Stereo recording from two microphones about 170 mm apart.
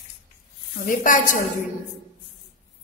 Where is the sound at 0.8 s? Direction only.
50° left (ahead or behind).